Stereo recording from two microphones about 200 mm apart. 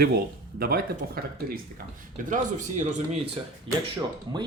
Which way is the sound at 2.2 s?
40° right (ahead or behind).